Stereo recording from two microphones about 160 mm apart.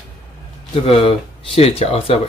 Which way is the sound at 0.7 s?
35° left (ahead or behind).